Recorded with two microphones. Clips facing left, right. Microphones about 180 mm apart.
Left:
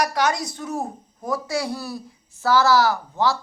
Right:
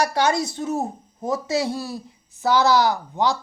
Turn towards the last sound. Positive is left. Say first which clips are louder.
# even
turn(degrees=-20)  # may be behind; listen again after turning